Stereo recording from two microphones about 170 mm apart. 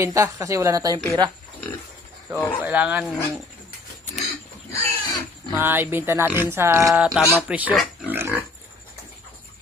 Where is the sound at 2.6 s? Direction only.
10° right (ahead or behind).